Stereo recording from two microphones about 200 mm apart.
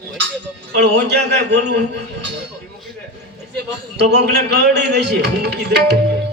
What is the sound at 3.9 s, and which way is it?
A man's voice, 55° right (ahead or behind).